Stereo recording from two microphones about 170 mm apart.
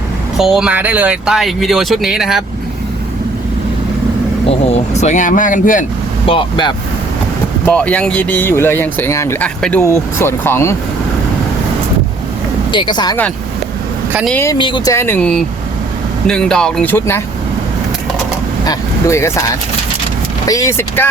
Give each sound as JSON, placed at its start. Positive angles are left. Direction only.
{"t": 0.3, "sound": "speech", "side_deg": 0}
{"t": 4.7, "sound": "speech", "side_deg": 40}
{"t": 6.2, "sound": "speech", "side_deg": 30}
{"t": 7.7, "sound": "speech", "side_deg": 5}
{"t": 12.7, "sound": "speech", "side_deg": 25}
{"t": 14.4, "sound": "speech", "side_deg": 25}
{"t": 14.9, "sound": "speech", "side_deg": 10}
{"t": 18.6, "sound": "speech", "side_deg": 20}
{"t": 20.5, "sound": "speech", "side_deg": 20}